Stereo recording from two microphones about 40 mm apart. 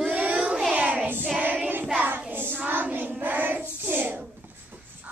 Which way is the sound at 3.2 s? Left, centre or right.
Right.